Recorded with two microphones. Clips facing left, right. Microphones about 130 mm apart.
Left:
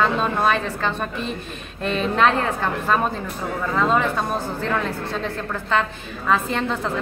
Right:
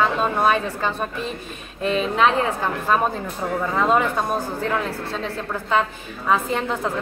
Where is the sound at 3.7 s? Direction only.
15° right (ahead or behind).